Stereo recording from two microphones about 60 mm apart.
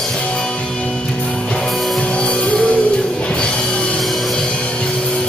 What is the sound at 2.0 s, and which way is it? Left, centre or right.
Music, centre.